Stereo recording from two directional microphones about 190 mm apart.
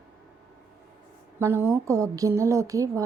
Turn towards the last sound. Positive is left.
turn(degrees=-15)  # may be behind; listen again after turning